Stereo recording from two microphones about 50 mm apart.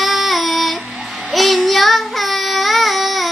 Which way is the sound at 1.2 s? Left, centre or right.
Centre.